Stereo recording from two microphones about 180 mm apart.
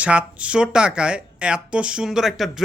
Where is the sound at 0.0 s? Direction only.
5° right (ahead or behind).